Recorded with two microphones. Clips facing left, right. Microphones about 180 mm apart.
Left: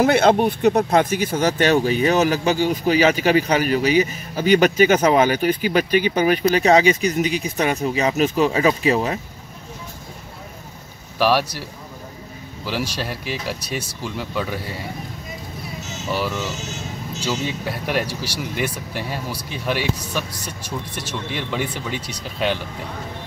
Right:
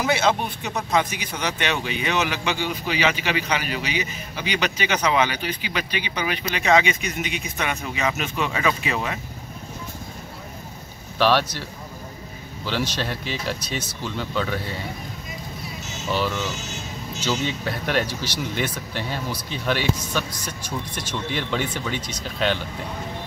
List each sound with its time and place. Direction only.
0.0 s speech: 55° left (ahead or behind); by 9.2 s 35° left (ahead or behind)
11.1 s speech: 5° left (ahead or behind)
13.0 s speech: 5° left (ahead or behind)
16.1 s speech: 5° left (ahead or behind)
18.0 s speech: 35° left (ahead or behind)
18.4 s speech: 5° left (ahead or behind)